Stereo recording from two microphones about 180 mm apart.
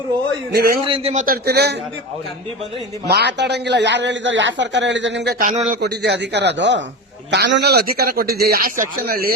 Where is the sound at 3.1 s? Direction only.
70° right (ahead or behind).